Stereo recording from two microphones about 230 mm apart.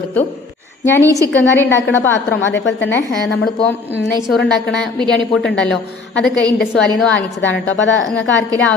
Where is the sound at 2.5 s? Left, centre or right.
Left.